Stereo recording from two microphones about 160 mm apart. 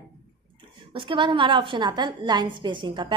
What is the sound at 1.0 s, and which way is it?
A woman's voice, 30° right (ahead or behind).